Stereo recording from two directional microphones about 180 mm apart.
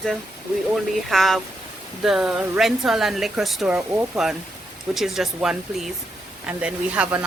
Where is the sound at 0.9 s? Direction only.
Centre (ahead or behind).